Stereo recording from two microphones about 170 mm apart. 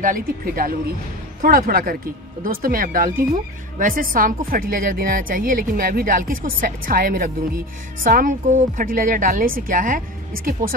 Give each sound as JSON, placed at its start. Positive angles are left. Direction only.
{"t": 0.0, "sound": "a woman's voice", "side_deg": -55}